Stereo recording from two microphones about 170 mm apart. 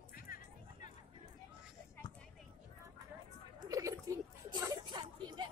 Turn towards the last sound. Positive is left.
turn(degrees=-25)  # may be behind; listen again after turning